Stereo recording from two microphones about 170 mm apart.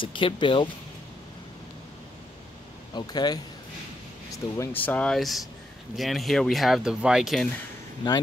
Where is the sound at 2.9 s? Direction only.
25° left (ahead or behind); by 7.5 s centre (ahead or behind).